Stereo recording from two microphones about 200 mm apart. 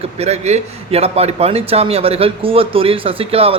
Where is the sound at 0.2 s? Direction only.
35° right (ahead or behind).